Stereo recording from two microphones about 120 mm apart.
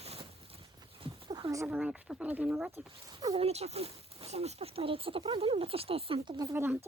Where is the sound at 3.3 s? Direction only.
60° right (ahead or behind).